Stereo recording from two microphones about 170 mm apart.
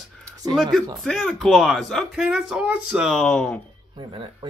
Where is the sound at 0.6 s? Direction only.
Centre (ahead or behind).